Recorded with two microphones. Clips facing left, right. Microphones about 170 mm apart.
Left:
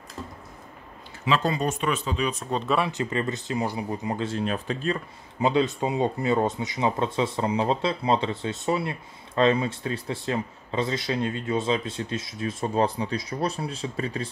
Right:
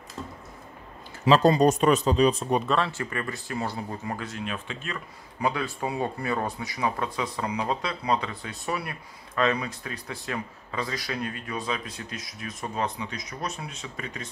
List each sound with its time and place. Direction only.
1.2 s speech: 40° right (ahead or behind)
2.6 s speech: 10° left (ahead or behind)
2.9 s speech: 20° left (ahead or behind)